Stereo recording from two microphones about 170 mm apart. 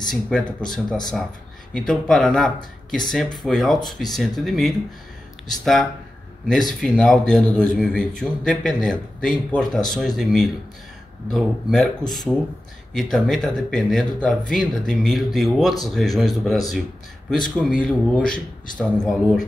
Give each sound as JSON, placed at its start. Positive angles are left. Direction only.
{"t": 0.0, "sound": "speech", "side_deg": 5}
{"t": 6.4, "sound": "speech", "side_deg": 0}
{"t": 12.9, "sound": "speech", "side_deg": 5}